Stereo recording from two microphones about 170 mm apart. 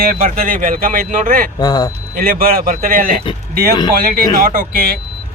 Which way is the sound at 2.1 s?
60° right (ahead or behind).